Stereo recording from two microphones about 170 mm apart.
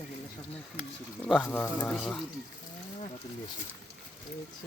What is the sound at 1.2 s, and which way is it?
Speech, centre (ahead or behind).